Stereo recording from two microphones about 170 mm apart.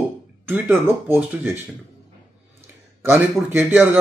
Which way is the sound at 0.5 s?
10° right (ahead or behind).